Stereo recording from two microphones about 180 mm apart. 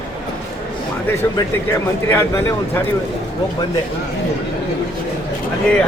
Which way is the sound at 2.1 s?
15° left (ahead or behind).